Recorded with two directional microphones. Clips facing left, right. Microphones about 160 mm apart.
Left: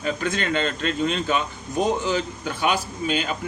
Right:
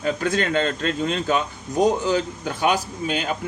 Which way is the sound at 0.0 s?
45° right (ahead or behind).